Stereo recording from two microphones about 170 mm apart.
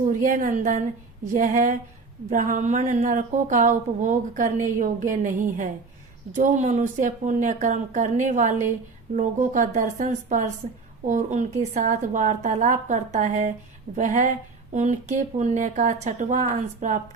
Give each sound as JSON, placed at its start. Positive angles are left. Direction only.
{"t": 0.1, "sound": "a woman's voice", "side_deg": -50}